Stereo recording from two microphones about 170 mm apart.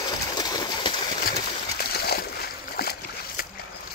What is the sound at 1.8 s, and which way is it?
Splash, 65° left (ahead or behind).